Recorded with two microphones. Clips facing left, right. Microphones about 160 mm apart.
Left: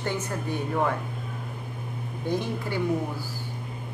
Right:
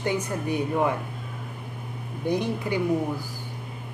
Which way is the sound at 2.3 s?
15° right (ahead or behind).